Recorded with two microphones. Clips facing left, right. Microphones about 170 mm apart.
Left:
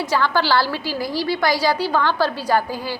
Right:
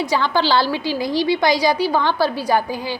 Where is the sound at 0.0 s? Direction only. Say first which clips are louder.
Right 1 dB; 15° right (ahead or behind).